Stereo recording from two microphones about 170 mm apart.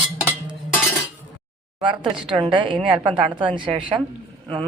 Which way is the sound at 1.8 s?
30° right (ahead or behind).